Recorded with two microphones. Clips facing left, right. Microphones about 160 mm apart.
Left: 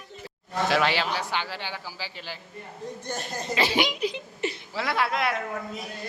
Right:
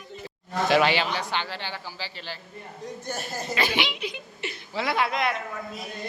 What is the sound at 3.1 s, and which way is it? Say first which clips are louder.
Speech: right 1 dB; 5° right (ahead or behind).